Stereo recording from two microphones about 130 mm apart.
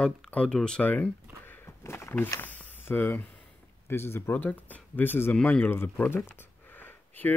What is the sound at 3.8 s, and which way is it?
Speech, 20° left (ahead or behind).